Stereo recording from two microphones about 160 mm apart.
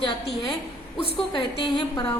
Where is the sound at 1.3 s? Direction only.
30° left (ahead or behind).